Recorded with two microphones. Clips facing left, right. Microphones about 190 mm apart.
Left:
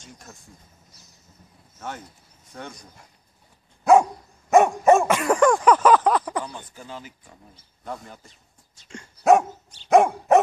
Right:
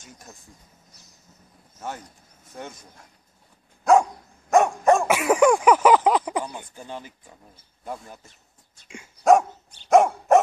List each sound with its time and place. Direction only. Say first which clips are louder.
0.3 s speech: even; 15° right (ahead or behind)
2.5 s speech: right 1 dB; 20° right (ahead or behind)
3.8 s dog: left 2 dB; centre (ahead or behind)
5.0 s speech: right 1 dB; 5° right (ahead or behind)
8.8 s dog: left 2 dB; 10° right (ahead or behind)
9.2 s dog: even; centre (ahead or behind)